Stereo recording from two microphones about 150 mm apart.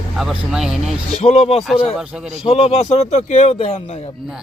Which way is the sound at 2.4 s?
40° left (ahead or behind).